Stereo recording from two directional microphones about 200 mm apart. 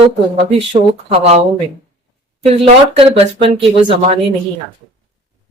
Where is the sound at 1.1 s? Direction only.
35° right (ahead or behind).